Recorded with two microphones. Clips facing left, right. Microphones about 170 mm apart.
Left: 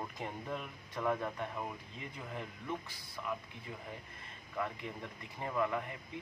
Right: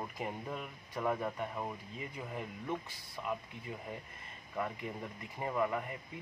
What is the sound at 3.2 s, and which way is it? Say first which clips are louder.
Speech: right 2 dB; 20° right (ahead or behind).